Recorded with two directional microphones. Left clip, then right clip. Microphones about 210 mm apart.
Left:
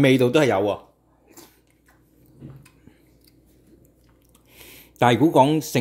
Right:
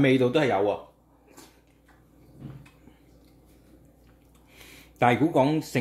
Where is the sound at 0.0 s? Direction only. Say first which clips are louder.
Left 5 dB; 40° left (ahead or behind).